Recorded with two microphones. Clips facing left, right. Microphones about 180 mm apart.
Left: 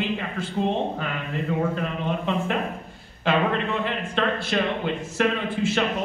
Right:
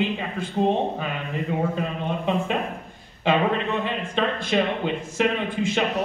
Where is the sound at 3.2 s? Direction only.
15° right (ahead or behind).